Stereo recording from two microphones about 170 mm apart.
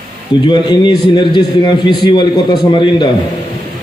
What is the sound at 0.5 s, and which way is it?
A man's voice, 25° left (ahead or behind).